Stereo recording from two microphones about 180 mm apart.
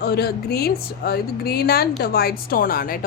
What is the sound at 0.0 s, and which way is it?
Speech, 65° left (ahead or behind).